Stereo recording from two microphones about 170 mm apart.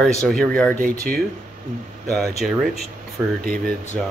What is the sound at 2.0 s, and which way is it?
Speech, centre (ahead or behind).